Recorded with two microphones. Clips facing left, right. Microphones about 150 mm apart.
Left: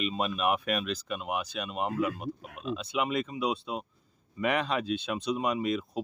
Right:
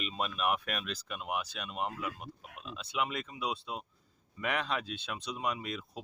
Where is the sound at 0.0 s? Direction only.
10° left (ahead or behind).